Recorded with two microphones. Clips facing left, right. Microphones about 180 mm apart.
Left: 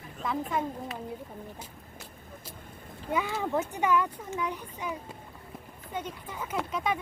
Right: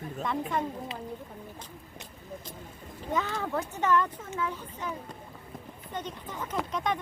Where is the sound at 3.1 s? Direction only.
10° left (ahead or behind).